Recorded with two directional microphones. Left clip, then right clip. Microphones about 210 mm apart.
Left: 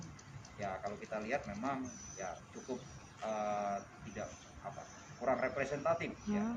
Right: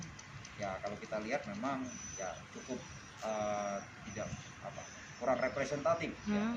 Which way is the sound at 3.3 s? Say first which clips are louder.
Even; 5° left (ahead or behind).